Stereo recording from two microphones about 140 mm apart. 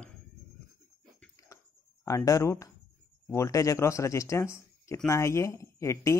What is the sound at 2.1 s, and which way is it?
Speech, 25° left (ahead or behind).